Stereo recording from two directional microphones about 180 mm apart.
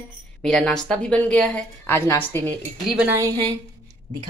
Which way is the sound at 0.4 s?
5° left (ahead or behind).